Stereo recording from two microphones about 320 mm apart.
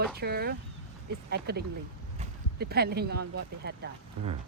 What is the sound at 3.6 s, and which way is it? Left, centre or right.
Speech, right.